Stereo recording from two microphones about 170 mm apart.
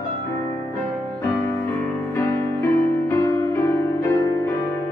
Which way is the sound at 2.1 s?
15° left (ahead or behind).